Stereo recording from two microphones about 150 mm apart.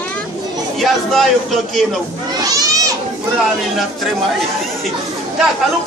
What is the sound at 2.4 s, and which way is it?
Children playing, 25° right (ahead or behind).